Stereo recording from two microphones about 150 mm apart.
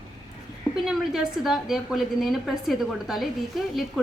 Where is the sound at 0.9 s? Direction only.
Centre (ahead or behind).